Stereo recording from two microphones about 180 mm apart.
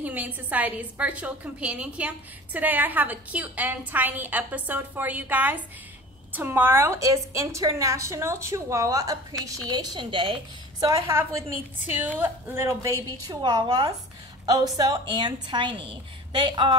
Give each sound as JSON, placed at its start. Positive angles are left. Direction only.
{"t": 0.0, "sound": "a woman's voice", "side_deg": -10}